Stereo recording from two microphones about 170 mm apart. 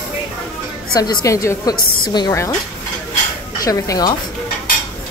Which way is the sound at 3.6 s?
20° left (ahead or behind).